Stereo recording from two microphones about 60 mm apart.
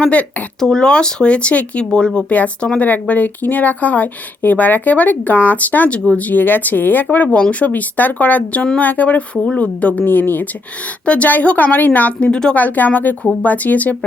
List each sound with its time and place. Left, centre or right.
0.0 s speech: left
0.6 s speech: centre
2.3 s speech: left
10.0 s speech: left
11.0 s speech: left
12.3 s speech: centre
12.5 s speech: left